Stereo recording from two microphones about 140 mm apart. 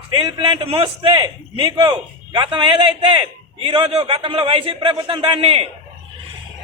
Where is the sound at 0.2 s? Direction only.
35° right (ahead or behind).